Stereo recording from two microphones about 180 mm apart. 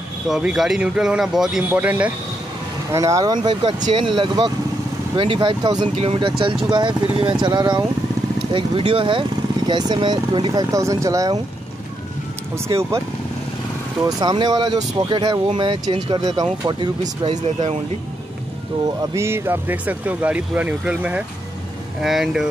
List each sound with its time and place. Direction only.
0.3 s speech: 5° right (ahead or behind); by 4.1 s 30° right (ahead or behind)
5.1 s speech: 25° right (ahead or behind)
12.6 s speech: 15° right (ahead or behind)
14.0 s speech: 25° right (ahead or behind)
17.3 s speech: 40° right (ahead or behind)
19.1 s speech: 15° right (ahead or behind)